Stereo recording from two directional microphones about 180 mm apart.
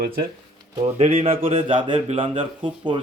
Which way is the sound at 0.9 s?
35° right (ahead or behind).